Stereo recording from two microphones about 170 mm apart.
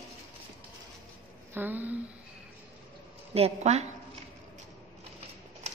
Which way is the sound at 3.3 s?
40° right (ahead or behind).